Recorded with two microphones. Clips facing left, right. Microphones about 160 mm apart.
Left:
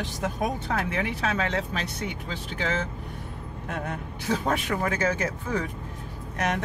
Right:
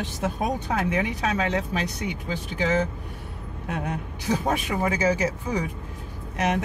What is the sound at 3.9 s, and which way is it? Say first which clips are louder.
Speech: right 2 dB; 15° right (ahead or behind).